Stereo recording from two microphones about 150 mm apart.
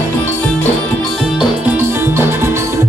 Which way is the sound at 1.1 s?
5° right (ahead or behind).